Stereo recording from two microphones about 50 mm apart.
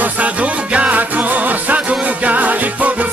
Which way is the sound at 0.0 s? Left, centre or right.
Right.